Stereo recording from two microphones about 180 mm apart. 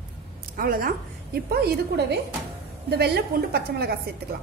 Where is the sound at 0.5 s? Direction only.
55° right (ahead or behind).